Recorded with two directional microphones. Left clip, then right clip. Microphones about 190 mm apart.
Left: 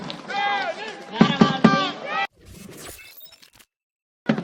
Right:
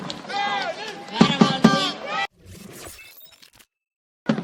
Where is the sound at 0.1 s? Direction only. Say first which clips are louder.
Left 1 dB; 40° right (ahead or behind).